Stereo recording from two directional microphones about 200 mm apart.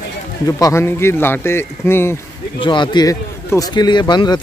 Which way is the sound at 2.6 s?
25° left (ahead or behind).